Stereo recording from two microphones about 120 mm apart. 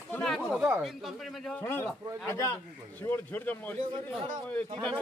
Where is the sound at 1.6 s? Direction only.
20° left (ahead or behind).